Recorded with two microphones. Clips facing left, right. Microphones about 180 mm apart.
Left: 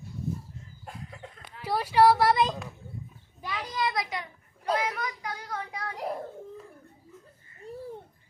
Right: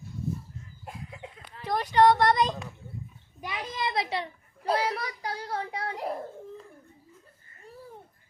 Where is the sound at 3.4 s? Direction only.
20° right (ahead or behind).